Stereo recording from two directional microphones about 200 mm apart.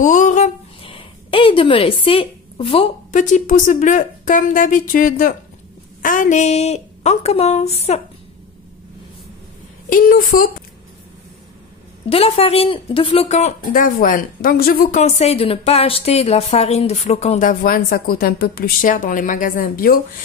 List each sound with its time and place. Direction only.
0.0 s a sound: 40° left (ahead or behind)
0.9 s a woman's voice: 25° left (ahead or behind)
9.8 s speech: 45° left (ahead or behind)
12.1 s speech: 30° left (ahead or behind); by 20.0 s 45° left (ahead or behind)